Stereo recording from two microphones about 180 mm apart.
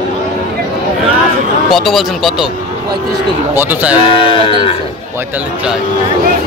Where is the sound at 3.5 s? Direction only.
10° right (ahead or behind).